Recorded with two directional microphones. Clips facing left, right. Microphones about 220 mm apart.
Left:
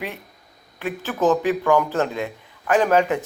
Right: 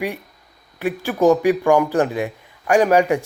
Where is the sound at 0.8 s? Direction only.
15° right (ahead or behind).